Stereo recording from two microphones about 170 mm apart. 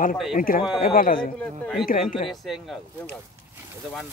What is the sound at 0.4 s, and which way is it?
Speech, 55° left (ahead or behind).